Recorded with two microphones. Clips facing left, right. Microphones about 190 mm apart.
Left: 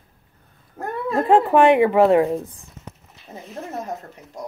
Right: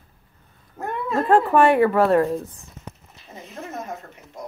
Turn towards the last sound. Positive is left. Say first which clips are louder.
# left 3 dB
turn(degrees=35)  # may be behind; listen again after turning